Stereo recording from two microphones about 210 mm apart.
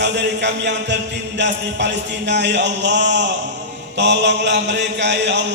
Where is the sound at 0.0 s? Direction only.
55° right (ahead or behind).